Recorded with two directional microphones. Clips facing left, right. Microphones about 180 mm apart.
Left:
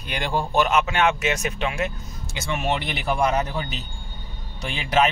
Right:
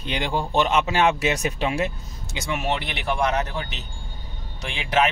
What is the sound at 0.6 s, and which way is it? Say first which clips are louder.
Speech: right 1 dB; 30° right (ahead or behind).